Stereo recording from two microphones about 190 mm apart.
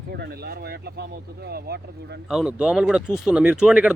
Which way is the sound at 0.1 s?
55° right (ahead or behind).